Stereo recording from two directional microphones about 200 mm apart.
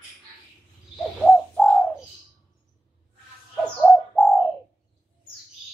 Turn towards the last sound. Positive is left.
turn(degrees=0)  # may be behind; listen again after turning